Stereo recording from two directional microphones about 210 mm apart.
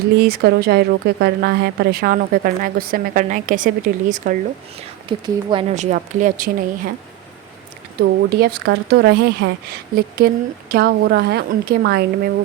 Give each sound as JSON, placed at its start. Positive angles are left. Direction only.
{"t": 0.2, "sound": "speech", "side_deg": -50}
{"t": 5.0, "sound": "speech", "side_deg": -25}
{"t": 7.9, "sound": "speech", "side_deg": -50}